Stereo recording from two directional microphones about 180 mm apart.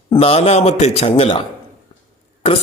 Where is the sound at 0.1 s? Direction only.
35° left (ahead or behind).